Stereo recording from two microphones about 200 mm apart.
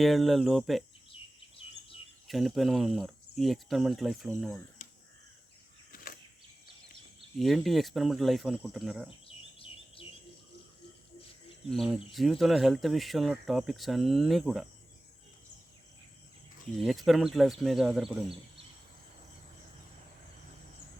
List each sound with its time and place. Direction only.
0.0 s speech: centre (ahead or behind)
1.1 s chirp: 25° left (ahead or behind)
2.2 s speech: centre (ahead or behind)
7.3 s speech: centre (ahead or behind)
9.0 s bird: 25° left (ahead or behind)
11.7 s speech: centre (ahead or behind)
16.8 s speech: centre (ahead or behind)